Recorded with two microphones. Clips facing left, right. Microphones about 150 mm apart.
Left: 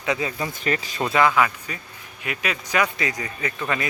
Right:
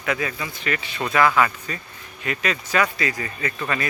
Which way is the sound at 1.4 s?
10° left (ahead or behind).